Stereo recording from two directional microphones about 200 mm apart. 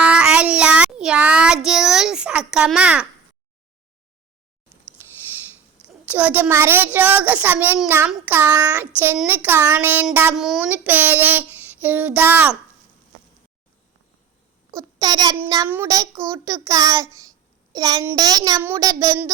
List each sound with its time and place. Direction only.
0.0 s child singing: 5° right (ahead or behind)
1.6 s a sound: centre (ahead or behind)
5.0 s a sound: 15° right (ahead or behind)
5.8 s child singing: 5° right (ahead or behind)
14.8 s a child's voice: 20° right (ahead or behind)
15.4 s child singing: 20° right (ahead or behind)